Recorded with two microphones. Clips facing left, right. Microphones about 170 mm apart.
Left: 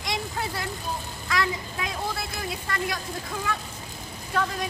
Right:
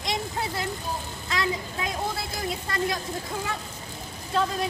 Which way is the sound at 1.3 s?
25° right (ahead or behind).